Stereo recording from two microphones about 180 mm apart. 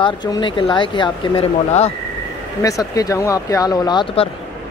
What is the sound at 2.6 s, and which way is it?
Speech, 20° left (ahead or behind).